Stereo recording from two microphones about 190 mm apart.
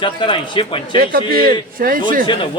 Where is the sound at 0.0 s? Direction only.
25° left (ahead or behind).